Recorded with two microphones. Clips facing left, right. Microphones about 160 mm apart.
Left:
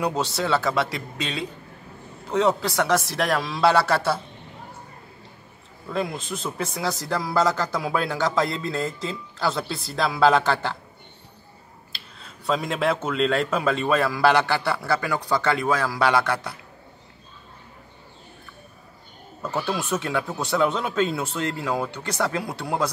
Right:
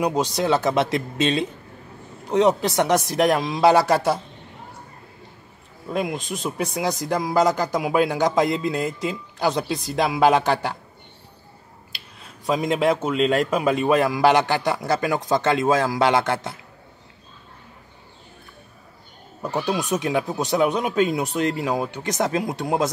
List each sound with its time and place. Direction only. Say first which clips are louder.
0.0 s speech: right 3 dB; 15° right (ahead or behind)
5.9 s a man's voice: right 2 dB; 15° right (ahead or behind)
12.4 s a man's voice: right 3 dB; 15° right (ahead or behind)
19.4 s a man's voice: right 3 dB; 15° right (ahead or behind)